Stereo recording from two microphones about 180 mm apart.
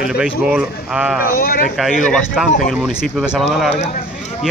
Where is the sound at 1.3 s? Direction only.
55° left (ahead or behind).